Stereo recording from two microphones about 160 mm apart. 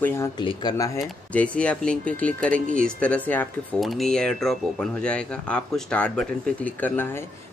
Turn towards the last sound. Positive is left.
turn(degrees=10)  # may be behind; listen again after turning